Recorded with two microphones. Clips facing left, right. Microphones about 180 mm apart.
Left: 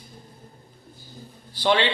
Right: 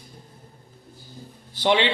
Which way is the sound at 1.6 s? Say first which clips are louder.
Right 1 dB; 15° right (ahead or behind).